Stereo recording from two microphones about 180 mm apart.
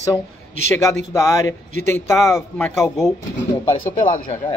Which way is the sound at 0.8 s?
20° left (ahead or behind).